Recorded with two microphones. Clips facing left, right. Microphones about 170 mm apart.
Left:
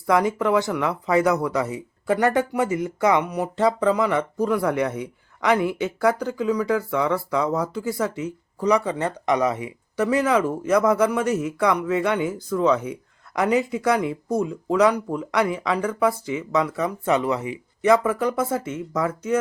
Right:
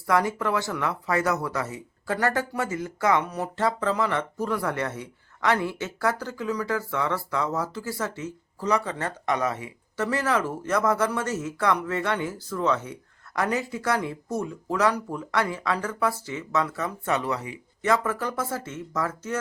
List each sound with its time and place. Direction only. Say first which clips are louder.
0.1 s speech: left 5 dB; 20° left (ahead or behind)